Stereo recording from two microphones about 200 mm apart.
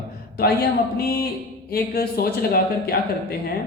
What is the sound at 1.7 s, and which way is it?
A woman's voice, 50° left (ahead or behind).